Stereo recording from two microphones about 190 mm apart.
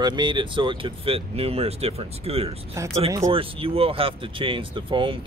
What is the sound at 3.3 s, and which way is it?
Speech, 30° right (ahead or behind).